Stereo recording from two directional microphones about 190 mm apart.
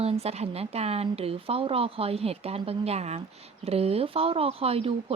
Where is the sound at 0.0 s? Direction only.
35° right (ahead or behind).